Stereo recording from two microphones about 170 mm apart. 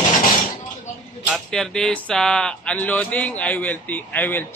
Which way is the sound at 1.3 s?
5° left (ahead or behind).